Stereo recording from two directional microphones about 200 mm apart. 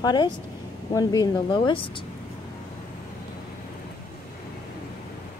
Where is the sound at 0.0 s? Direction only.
20° left (ahead or behind).